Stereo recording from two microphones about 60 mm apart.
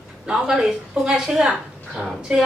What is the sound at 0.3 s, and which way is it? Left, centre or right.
A woman's voice, centre.